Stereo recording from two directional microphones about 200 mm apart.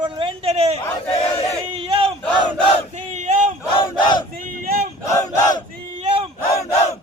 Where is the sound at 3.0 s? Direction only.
35° right (ahead or behind).